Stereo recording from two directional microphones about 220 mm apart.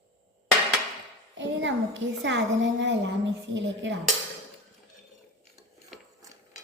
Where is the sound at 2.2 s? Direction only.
55° right (ahead or behind).